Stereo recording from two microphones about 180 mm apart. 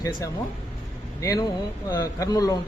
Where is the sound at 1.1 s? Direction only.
20° left (ahead or behind).